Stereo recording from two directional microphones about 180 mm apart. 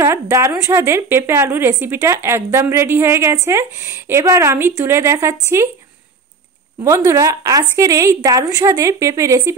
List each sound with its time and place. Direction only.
0.0 s a woman's voice: 15° right (ahead or behind)
6.8 s a woman's voice: 15° right (ahead or behind)